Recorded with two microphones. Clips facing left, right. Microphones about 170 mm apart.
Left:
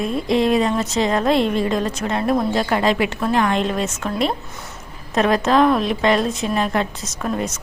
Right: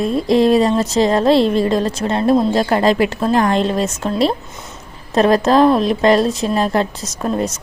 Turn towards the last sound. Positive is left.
turn(degrees=-35)  # may be behind; listen again after turning